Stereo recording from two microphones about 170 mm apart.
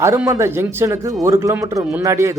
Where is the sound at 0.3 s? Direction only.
15° right (ahead or behind).